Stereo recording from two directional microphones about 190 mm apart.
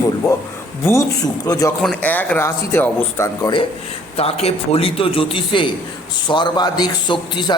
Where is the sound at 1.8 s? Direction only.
5° left (ahead or behind).